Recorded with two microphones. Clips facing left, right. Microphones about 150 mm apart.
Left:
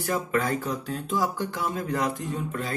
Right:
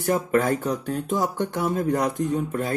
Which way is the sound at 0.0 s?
55° right (ahead or behind).